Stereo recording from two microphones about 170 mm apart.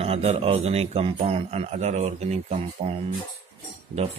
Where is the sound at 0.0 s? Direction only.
35° right (ahead or behind).